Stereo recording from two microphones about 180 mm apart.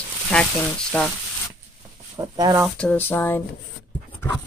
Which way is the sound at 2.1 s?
20° right (ahead or behind).